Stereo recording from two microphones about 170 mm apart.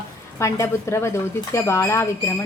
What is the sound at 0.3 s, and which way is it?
A woman's voice, 15° left (ahead or behind).